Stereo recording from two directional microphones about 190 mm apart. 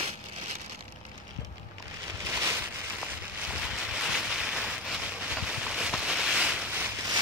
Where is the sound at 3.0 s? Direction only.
5° right (ahead or behind).